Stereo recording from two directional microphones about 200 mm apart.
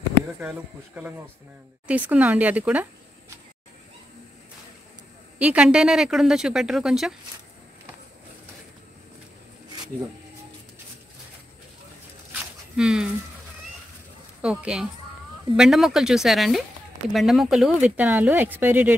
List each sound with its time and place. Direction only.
0.4 s speech: 5° right (ahead or behind)
5.4 s a woman's voice: 5° right (ahead or behind)
12.3 s a sound: 5° right (ahead or behind)
14.4 s a woman's voice: 5° right (ahead or behind)